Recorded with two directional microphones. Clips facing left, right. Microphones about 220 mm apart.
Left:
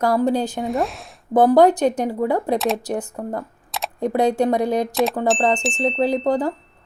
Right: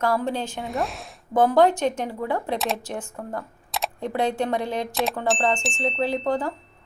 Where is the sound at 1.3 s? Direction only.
35° left (ahead or behind).